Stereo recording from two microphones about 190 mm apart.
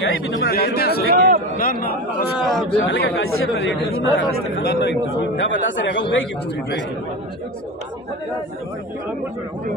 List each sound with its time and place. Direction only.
0.1 s speech: 75° left (ahead or behind); by 1.0 s 55° left (ahead or behind)
1.0 s a sound: 55° right (ahead or behind)
1.6 s a man's voice: 50° left (ahead or behind)
2.3 s a man's voice: centre (ahead or behind)
2.8 s speech: 75° left (ahead or behind)